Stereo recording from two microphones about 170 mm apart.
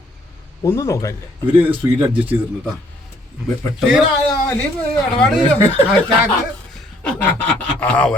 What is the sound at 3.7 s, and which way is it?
Speech, 5° right (ahead or behind).